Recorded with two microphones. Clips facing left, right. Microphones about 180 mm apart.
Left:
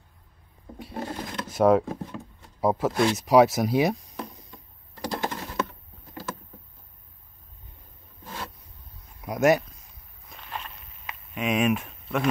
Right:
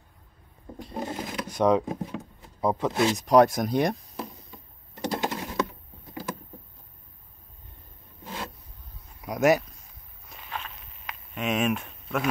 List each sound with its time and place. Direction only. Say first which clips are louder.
1.1 s drawer open or close: right 1 dB; 10° right (ahead or behind)
1.5 s speech: left 3 dB; 5° left (ahead or behind)
1.9 s a sound: right 2 dB; 20° right (ahead or behind)
2.6 s speech: left 1 dB; 5° left (ahead or behind)
4.9 s bird: right 1 dB; 20° right (ahead or behind)
8.2 s vehicle: right 1 dB; 15° right (ahead or behind)
9.2 s a sound: left 1 dB; centre (ahead or behind)
10.3 s walk: even; centre (ahead or behind)